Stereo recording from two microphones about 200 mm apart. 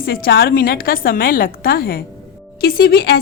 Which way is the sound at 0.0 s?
50° left (ahead or behind).